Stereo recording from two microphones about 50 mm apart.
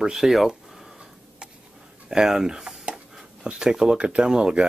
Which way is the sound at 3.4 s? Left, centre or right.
Centre.